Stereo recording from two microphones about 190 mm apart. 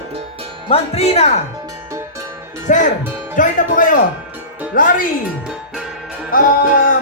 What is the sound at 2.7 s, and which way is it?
Speech, 45° left (ahead or behind).